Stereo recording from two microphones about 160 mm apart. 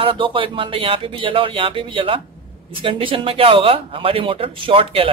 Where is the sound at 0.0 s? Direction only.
30° right (ahead or behind).